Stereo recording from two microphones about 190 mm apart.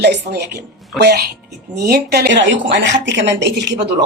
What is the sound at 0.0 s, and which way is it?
A woman's voice, 60° right (ahead or behind).